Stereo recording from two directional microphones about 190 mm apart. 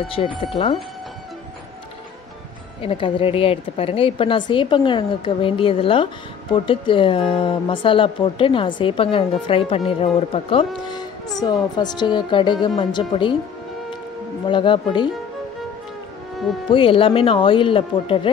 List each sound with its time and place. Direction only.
0.0 s speech: 30° left (ahead or behind)
2.8 s speech: 30° left (ahead or behind)
11.7 s speech: 20° left (ahead or behind)
14.5 s speech: 25° left (ahead or behind)
16.7 s speech: 30° left (ahead or behind)